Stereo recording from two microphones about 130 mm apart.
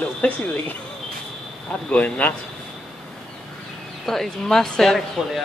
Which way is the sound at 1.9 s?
10° left (ahead or behind).